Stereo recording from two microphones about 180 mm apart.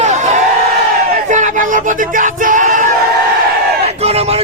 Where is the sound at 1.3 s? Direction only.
45° right (ahead or behind).